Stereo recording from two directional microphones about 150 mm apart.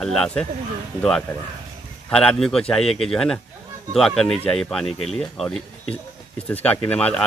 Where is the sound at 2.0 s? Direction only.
5° left (ahead or behind).